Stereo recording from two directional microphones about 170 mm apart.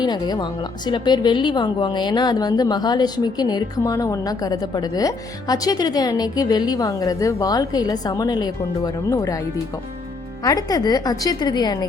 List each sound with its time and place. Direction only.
0.0 s a woman's voice: 25° left (ahead or behind)
10.4 s a woman's voice: 20° left (ahead or behind)